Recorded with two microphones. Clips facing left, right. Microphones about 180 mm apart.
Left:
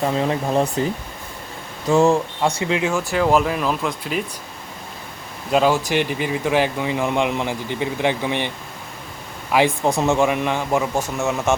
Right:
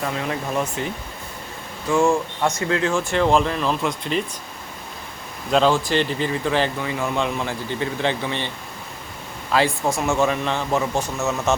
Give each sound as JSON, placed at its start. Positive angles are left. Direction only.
{"t": 0.0, "sound": "speech", "side_deg": 30}
{"t": 2.6, "sound": "speech", "side_deg": 15}
{"t": 5.5, "sound": "speech", "side_deg": 10}